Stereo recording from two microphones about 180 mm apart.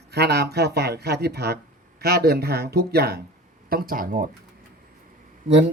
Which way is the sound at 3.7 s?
55° right (ahead or behind).